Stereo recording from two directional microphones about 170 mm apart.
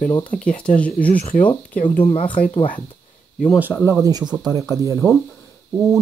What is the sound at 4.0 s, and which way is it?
Speech, 25° right (ahead or behind).